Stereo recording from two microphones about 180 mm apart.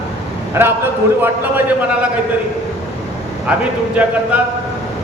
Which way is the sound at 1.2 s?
10° right (ahead or behind).